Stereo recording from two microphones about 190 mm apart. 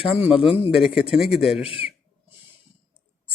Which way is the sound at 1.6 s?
30° left (ahead or behind).